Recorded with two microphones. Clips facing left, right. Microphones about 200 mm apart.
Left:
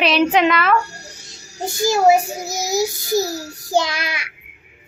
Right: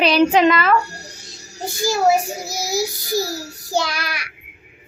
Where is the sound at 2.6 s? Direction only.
20° left (ahead or behind).